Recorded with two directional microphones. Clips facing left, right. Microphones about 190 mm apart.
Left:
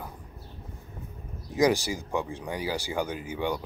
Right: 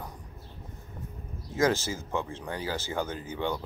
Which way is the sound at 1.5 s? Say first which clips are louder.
Left 3 dB; 15° left (ahead or behind).